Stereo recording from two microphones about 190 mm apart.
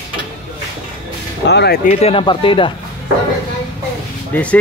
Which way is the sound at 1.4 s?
60° left (ahead or behind).